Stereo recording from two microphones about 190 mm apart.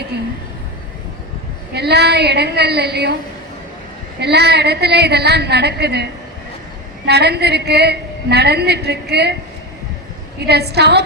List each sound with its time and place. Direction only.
1.7 s a woman's voice: 60° right (ahead or behind)
4.2 s a woman's voice: 60° right (ahead or behind)
7.1 s a woman's voice: 60° right (ahead or behind)
10.4 s a woman's voice: 60° right (ahead or behind)